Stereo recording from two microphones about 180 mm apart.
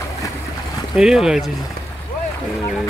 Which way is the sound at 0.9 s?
Centre (ahead or behind).